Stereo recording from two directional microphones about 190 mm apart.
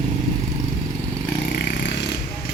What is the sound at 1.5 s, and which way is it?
Vehicle, 60° left (ahead or behind).